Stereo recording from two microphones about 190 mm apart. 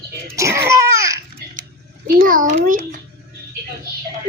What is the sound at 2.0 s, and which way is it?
Speech, 50° right (ahead or behind).